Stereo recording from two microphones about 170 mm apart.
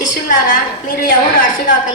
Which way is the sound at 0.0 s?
55° left (ahead or behind).